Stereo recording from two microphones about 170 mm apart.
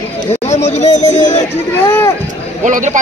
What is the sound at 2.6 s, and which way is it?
Speech, 45° right (ahead or behind).